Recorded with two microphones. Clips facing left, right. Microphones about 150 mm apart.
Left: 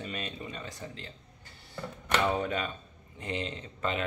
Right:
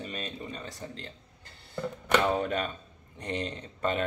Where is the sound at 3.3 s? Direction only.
40° right (ahead or behind).